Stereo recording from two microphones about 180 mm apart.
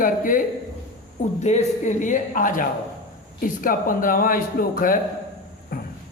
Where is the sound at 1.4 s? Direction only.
40° left (ahead or behind).